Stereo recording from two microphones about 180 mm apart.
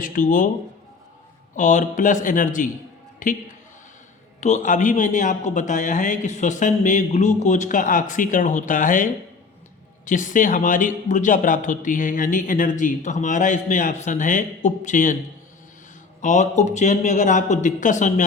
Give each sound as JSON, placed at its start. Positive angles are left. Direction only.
{"t": 0.0, "sound": "speech", "side_deg": 50}
{"t": 1.5, "sound": "speech", "side_deg": 45}
{"t": 10.1, "sound": "speech", "side_deg": 45}
{"t": 16.2, "sound": "speech", "side_deg": 40}